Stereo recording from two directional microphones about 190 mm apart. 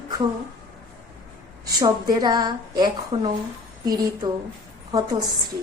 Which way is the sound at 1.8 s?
20° right (ahead or behind).